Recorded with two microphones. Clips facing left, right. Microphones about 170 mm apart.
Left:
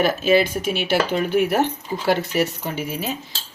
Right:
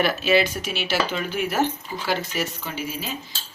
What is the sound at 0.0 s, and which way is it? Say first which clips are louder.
Speech: left 3 dB; 50° left (ahead or behind).